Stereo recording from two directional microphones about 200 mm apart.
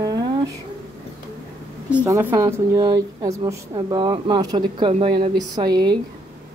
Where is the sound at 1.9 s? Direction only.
10° right (ahead or behind).